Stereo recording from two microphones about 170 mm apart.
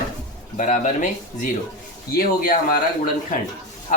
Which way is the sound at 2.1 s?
60° left (ahead or behind).